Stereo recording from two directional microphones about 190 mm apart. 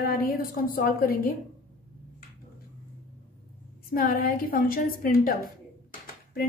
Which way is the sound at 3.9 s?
50° left (ahead or behind).